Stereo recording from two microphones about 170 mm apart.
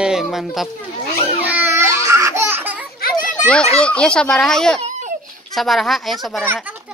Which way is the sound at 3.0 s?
50° left (ahead or behind).